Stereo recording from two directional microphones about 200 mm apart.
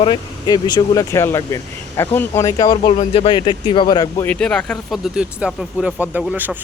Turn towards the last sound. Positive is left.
turn(degrees=-5)  # may be behind; listen again after turning